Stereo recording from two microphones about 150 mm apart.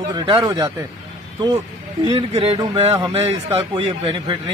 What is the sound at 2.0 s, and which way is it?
A man's voice, 40° right (ahead or behind).